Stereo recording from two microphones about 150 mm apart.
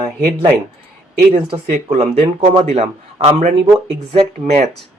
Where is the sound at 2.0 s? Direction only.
40° right (ahead or behind).